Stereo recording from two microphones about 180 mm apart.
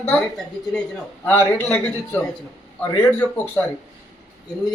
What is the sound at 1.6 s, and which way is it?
A man's voice, 15° left (ahead or behind).